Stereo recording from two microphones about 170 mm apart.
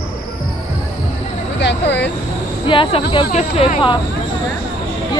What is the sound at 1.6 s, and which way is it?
Speech, 90° left.